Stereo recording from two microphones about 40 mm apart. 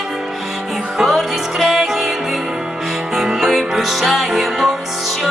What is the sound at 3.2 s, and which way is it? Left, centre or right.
Music, centre.